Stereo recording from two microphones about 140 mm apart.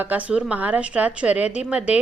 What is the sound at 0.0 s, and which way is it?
A woman's voice, 10° right (ahead or behind).